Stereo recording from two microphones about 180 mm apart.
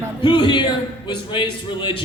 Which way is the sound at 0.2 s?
25° left (ahead or behind).